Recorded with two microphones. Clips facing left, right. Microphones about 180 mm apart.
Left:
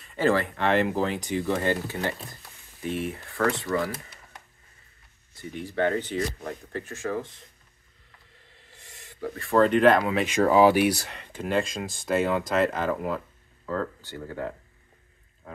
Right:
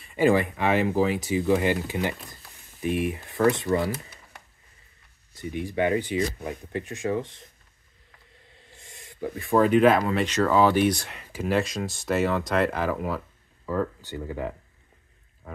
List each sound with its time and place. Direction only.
0.0 s speech: 10° right (ahead or behind)
5.4 s speech: 15° right (ahead or behind)
8.8 s a sound: 20° right (ahead or behind)
9.7 s speech: 5° right (ahead or behind)
13.7 s speech: 15° right (ahead or behind)
15.4 s a sound: centre (ahead or behind)